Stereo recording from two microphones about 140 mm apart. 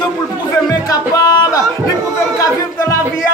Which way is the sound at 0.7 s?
25° left (ahead or behind).